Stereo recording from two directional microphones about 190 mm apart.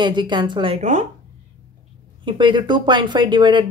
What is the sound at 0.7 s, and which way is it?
Speech, 40° right (ahead or behind).